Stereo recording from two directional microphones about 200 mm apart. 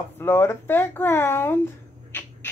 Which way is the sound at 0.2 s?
10° left (ahead or behind).